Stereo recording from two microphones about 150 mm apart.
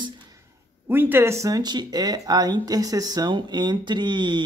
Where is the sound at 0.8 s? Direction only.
15° right (ahead or behind).